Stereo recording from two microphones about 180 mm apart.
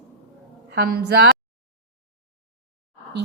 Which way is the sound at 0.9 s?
65° right (ahead or behind).